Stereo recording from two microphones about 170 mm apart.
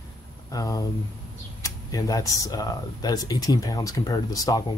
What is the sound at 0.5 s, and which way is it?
Speech, 20° left (ahead or behind).